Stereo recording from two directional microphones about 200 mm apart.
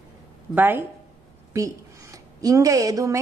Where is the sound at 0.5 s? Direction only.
10° right (ahead or behind).